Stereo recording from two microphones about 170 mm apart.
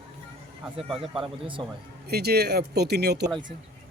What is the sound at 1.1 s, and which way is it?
Speech, 30° right (ahead or behind).